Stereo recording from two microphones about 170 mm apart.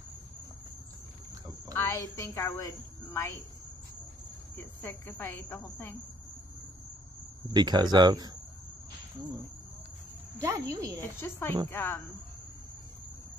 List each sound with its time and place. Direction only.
1.8 s a woman's voice: 20° left (ahead or behind)
4.6 s speech: 15° left (ahead or behind)
7.5 s speech: 25° right (ahead or behind)
10.4 s speech: 20° right (ahead or behind)
11.0 s speech: 15° left (ahead or behind)